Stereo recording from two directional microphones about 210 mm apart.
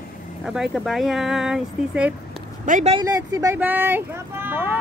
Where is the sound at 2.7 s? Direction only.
35° right (ahead or behind).